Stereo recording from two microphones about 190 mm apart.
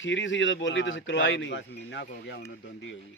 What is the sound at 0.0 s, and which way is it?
Speech, 75° left (ahead or behind).